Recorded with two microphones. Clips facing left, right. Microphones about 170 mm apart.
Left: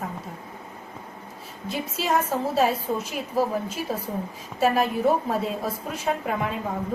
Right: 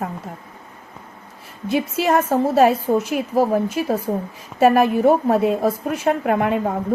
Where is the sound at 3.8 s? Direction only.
60° right (ahead or behind).